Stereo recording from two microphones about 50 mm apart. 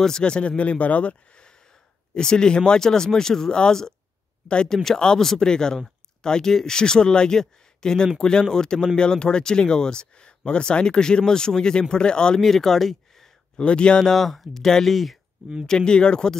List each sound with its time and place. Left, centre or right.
0.0 s a man's voice: centre
12.4 s speech: centre
13.6 s a man's voice: centre
14.1 s speech: centre
15.6 s speech: centre